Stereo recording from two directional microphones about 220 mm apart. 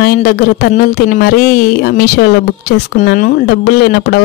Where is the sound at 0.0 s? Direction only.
40° left (ahead or behind).